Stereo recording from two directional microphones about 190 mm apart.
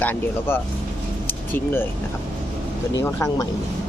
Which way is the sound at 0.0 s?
10° left (ahead or behind).